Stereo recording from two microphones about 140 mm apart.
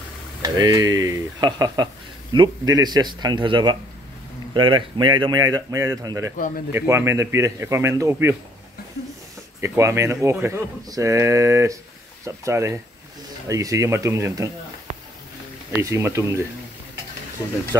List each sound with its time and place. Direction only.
0.4 s speech: 25° right (ahead or behind)
9.6 s speech: 20° right (ahead or behind)
15.8 s speech: 20° right (ahead or behind)